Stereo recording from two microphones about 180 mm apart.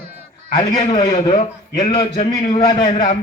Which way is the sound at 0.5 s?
25° left (ahead or behind).